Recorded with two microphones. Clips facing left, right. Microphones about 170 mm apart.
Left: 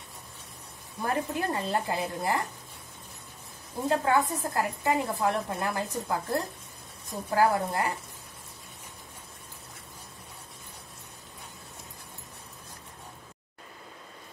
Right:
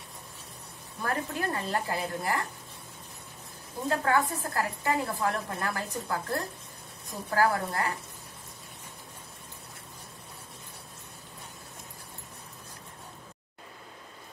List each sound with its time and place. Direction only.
1.0 s a woman's voice: 20° left (ahead or behind)
3.9 s a woman's voice: 20° left (ahead or behind)